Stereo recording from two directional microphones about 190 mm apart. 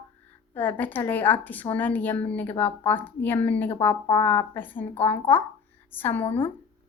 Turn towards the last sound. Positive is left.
turn(degrees=10)  # may be behind; listen again after turning